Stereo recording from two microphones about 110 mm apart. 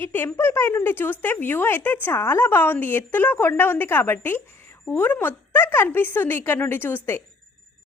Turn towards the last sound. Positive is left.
turn(degrees=20)  # may be behind; listen again after turning